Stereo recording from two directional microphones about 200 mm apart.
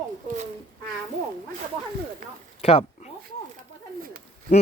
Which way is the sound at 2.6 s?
30° left (ahead or behind).